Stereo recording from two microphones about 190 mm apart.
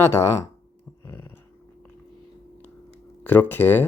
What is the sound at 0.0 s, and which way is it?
Speech, 15° left (ahead or behind).